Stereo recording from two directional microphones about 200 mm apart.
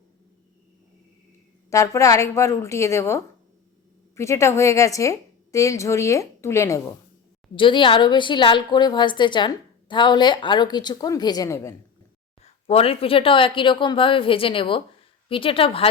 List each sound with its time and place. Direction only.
1.7 s a woman's voice: 15° left (ahead or behind)
12.4 s speech: 30° left (ahead or behind)